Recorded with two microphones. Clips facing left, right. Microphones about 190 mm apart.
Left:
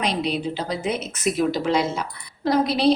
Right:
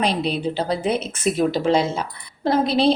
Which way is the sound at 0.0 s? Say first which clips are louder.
Right 2 dB; 30° right (ahead or behind).